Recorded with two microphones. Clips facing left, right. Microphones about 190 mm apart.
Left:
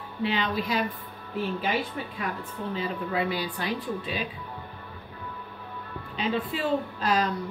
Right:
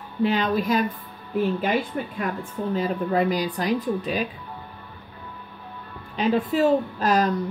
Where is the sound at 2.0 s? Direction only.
45° right (ahead or behind).